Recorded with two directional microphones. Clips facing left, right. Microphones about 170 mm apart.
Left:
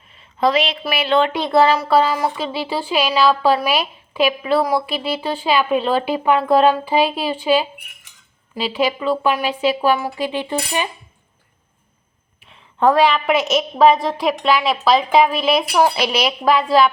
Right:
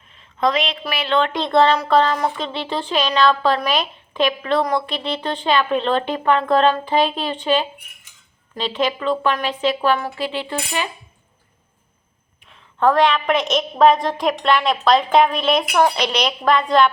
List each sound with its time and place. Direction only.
0.1 s a woman's voice: 5° left (ahead or behind)
12.5 s a woman's voice: 10° left (ahead or behind)